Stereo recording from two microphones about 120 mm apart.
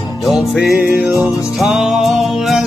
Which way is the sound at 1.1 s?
25° left (ahead or behind).